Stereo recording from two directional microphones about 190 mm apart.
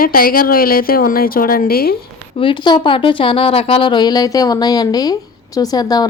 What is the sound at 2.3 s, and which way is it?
Speech, 25° left (ahead or behind).